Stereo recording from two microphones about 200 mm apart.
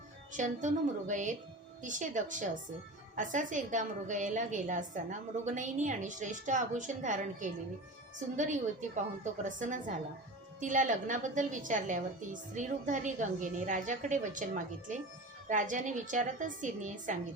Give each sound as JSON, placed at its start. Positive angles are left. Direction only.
{"t": 0.3, "sound": "a woman's voice", "side_deg": -40}